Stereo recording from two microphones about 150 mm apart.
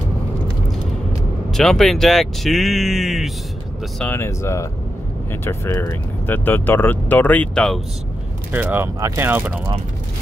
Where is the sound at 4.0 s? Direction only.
15° left (ahead or behind).